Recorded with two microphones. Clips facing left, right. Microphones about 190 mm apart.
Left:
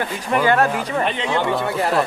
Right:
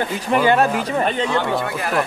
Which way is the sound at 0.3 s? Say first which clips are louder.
Right 1 dB; 20° right (ahead or behind).